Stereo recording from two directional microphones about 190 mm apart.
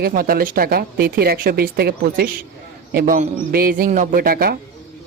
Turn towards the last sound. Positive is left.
turn(degrees=-50)  # may be behind; listen again after turning